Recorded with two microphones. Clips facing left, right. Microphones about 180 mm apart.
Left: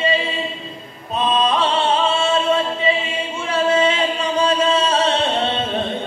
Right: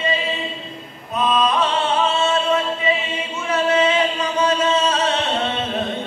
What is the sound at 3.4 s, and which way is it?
Chant, 30° left (ahead or behind).